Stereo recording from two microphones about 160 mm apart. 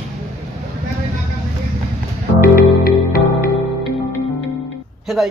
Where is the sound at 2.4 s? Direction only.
65° left (ahead or behind).